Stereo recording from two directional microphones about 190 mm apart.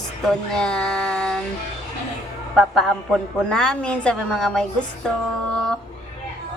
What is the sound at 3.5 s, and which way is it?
A woman's voice, 5° left (ahead or behind).